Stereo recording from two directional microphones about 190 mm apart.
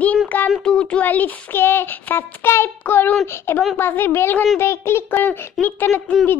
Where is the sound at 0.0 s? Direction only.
5° left (ahead or behind).